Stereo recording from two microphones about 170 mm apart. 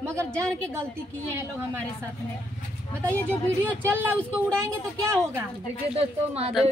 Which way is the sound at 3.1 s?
10° left (ahead or behind).